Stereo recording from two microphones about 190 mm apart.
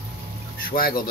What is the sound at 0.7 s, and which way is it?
Speech, 50° left (ahead or behind).